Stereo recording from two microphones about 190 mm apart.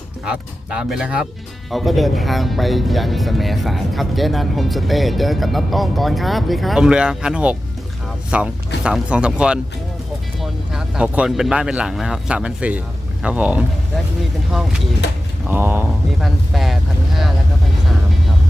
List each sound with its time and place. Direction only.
0.3 s speech: 5° right (ahead or behind)
15.0 s speech: 65° left (ahead or behind)
15.4 s speech: 10° right (ahead or behind)
16.2 s speech: centre (ahead or behind)